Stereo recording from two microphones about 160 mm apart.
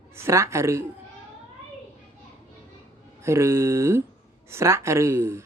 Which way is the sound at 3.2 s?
15° right (ahead or behind).